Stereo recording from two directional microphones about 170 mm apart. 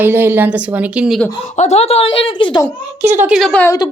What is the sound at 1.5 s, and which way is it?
A woman's voice, 40° left (ahead or behind).